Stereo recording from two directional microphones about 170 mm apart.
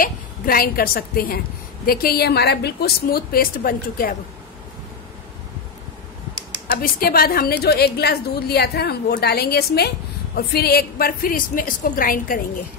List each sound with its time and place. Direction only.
0.0 s a woman's voice: 60° left (ahead or behind)
6.8 s a woman's voice: 60° left (ahead or behind)